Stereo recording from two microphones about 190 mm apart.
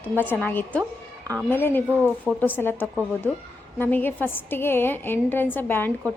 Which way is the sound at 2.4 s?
10° left (ahead or behind).